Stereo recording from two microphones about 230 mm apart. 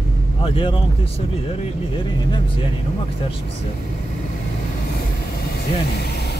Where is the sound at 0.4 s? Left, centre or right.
Left.